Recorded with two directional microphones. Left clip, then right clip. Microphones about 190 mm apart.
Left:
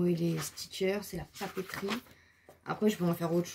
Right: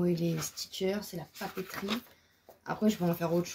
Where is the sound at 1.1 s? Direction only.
5° left (ahead or behind).